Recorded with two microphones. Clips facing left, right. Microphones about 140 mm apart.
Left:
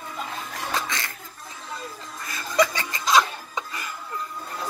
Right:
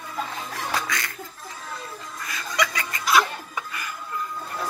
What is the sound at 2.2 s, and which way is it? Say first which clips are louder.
Music: left 5 dB; 30° left (ahead or behind).